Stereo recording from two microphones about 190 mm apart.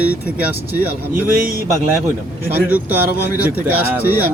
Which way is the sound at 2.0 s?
10° right (ahead or behind).